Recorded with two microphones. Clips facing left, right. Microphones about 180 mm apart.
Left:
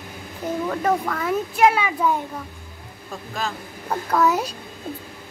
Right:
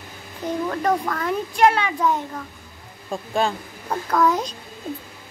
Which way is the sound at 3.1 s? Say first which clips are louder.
Right 6 dB; 30° right (ahead or behind).